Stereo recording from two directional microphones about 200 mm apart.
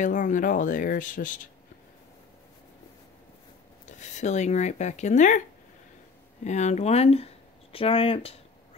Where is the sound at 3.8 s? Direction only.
35° left (ahead or behind).